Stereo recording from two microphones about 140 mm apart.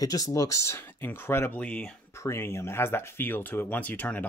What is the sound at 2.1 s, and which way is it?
Speech, 20° left (ahead or behind).